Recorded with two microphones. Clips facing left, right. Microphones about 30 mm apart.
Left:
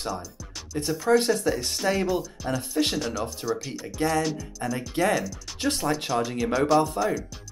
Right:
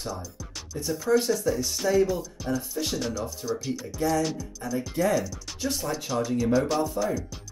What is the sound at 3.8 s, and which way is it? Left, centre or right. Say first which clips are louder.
Speech: left 1 dB; left.